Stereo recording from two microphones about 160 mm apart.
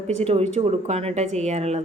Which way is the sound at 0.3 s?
40° right (ahead or behind).